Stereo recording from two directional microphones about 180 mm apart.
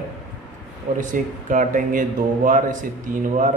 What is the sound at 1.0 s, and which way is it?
Speech, 45° right (ahead or behind).